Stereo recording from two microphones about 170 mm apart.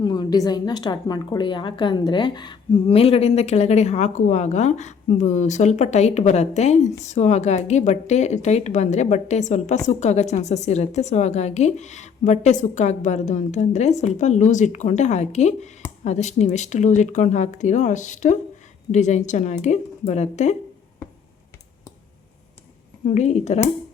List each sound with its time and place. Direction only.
0.0 s a woman's voice: 25° left (ahead or behind); by 20.6 s 40° left (ahead or behind)
23.0 s a woman's voice: 40° left (ahead or behind)